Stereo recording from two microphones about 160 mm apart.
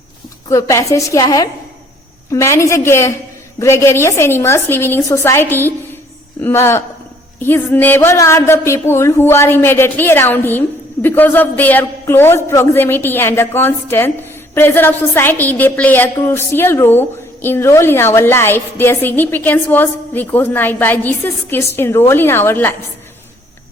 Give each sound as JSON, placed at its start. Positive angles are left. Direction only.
{"t": 0.5, "sound": "a woman's voice", "side_deg": 20}